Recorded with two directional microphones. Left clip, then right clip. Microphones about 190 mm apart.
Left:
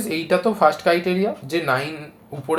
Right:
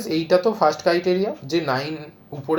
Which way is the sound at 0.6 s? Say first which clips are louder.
Left 2 dB; 10° right (ahead or behind).